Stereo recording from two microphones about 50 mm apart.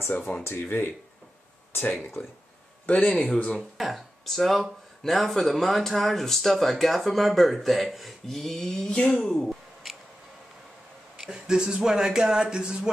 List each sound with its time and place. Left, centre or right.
0.4 s speech: left
0.7 s speech: left
2.2 s speech: left
3.7 s speech: centre
9.2 s a sound: centre
11.1 s speech: centre